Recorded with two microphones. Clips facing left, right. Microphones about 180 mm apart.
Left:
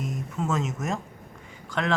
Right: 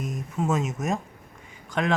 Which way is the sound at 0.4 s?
15° right (ahead or behind).